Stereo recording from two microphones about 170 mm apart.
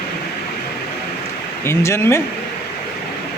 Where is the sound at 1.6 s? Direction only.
15° left (ahead or behind).